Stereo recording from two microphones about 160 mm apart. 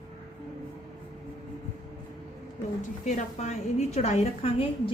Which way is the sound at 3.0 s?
45° left (ahead or behind).